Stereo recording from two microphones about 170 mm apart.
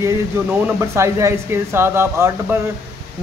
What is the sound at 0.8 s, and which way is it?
A man's voice, 15° right (ahead or behind).